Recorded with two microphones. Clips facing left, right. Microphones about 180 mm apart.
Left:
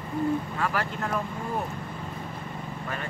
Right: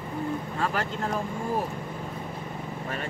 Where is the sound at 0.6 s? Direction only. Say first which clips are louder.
Even; 25° right (ahead or behind).